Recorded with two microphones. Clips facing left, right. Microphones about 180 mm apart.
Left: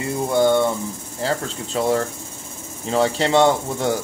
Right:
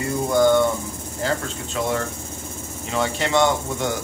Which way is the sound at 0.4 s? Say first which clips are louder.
Even; 30° left (ahead or behind).